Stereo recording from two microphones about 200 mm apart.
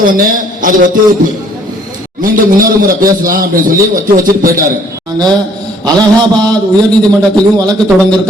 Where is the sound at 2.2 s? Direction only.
45° right (ahead or behind).